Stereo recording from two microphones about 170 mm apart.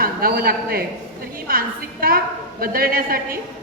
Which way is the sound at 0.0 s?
60° right (ahead or behind).